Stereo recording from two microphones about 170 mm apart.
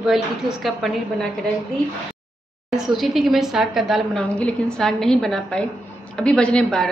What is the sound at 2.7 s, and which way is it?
A woman's voice, centre (ahead or behind).